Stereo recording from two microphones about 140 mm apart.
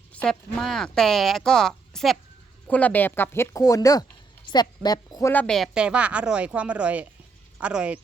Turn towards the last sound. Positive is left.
turn(degrees=-10)  # may be behind; listen again after turning